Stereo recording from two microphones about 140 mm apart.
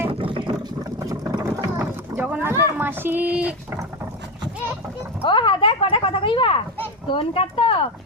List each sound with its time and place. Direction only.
0.1 s boat: 40° right (ahead or behind)
1.0 s vehicle: 25° right (ahead or behind)
2.1 s speech: 15° right (ahead or behind)
5.2 s speech: 35° left (ahead or behind)